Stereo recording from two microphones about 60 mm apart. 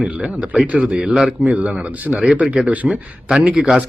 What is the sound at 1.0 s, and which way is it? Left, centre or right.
Speech, centre.